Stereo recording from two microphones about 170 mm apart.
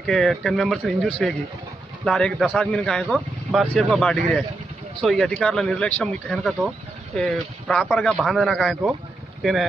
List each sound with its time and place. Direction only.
0.0 s speech: 5° left (ahead or behind)